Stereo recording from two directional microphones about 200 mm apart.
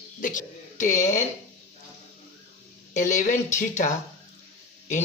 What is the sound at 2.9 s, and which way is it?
Speech, 40° left (ahead or behind).